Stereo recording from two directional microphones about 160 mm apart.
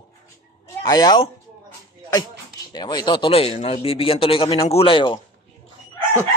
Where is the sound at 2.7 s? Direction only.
25° left (ahead or behind).